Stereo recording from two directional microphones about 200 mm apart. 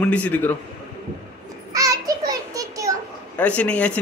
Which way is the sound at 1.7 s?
15° right (ahead or behind).